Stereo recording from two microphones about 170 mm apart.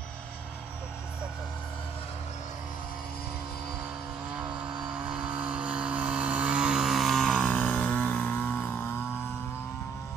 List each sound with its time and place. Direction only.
4.5 s vehicle: 25° right (ahead or behind)
4.9 s vehicle: 5° right (ahead or behind); by 8.8 s 10° left (ahead or behind)